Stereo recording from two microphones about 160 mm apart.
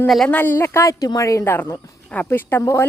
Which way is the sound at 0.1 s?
5° left (ahead or behind).